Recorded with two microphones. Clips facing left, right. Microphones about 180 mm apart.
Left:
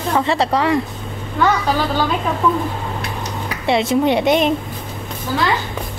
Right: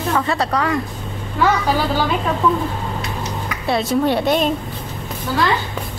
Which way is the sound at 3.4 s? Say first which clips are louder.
Left 3 dB; 25° left (ahead or behind).